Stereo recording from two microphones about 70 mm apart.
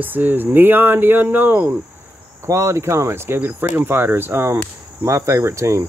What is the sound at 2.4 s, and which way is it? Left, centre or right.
Speech, right.